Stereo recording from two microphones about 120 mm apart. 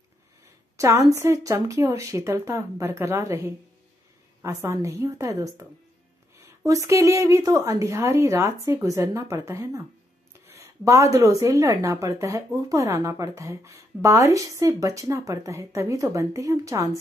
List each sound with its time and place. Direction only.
0.7 s a woman's voice: 25° right (ahead or behind)